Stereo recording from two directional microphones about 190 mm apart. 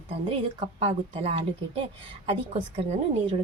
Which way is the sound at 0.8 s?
30° right (ahead or behind).